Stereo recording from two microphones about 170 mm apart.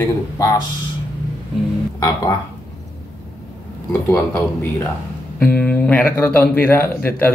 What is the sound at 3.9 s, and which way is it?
Speech, 15° left (ahead or behind).